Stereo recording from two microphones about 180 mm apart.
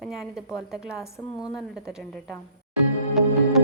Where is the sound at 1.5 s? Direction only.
Centre (ahead or behind).